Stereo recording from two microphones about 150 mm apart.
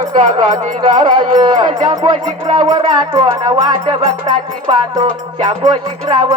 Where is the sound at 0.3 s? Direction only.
55° right (ahead or behind).